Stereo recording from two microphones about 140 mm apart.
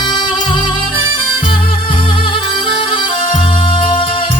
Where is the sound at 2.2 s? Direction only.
40° left (ahead or behind).